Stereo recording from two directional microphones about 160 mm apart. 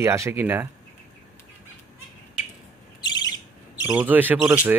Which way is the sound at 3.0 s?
25° left (ahead or behind).